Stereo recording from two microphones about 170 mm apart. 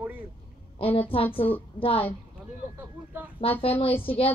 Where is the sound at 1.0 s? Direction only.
35° left (ahead or behind).